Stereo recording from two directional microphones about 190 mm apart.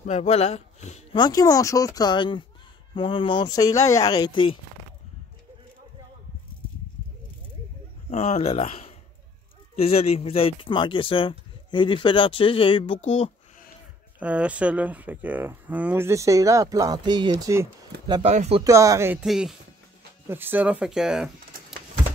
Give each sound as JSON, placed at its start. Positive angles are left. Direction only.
{"t": 0.0, "sound": "speech", "side_deg": 35}
{"t": 1.1, "sound": "speech", "side_deg": 20}
{"t": 8.1, "sound": "speech", "side_deg": 35}
{"t": 14.2, "sound": "speech", "side_deg": -5}
{"t": 18.3, "sound": "speech", "side_deg": -35}
{"t": 18.6, "sound": "speech", "side_deg": -15}
{"t": 19.2, "sound": "speech", "side_deg": -5}